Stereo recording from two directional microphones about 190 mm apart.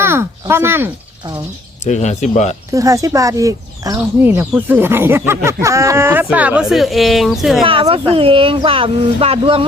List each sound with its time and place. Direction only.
0.0 s speech: 15° right (ahead or behind)
1.8 s speech: 35° left (ahead or behind)
2.7 s speech: 15° right (ahead or behind); by 7.6 s centre (ahead or behind)
7.6 s speech: 30° right (ahead or behind)